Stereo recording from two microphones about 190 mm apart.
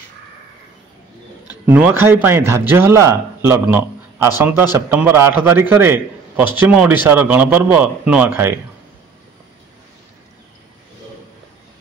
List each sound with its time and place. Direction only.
1.7 s speech: 10° right (ahead or behind)